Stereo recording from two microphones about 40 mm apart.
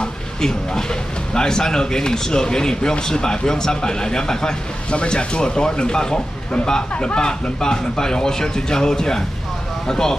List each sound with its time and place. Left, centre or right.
0.0 s speech: centre
4.9 s speech: left